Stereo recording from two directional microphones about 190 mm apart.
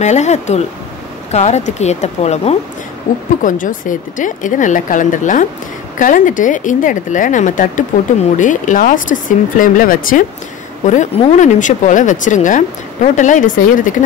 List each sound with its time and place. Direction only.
0.0 s speech: 35° left (ahead or behind)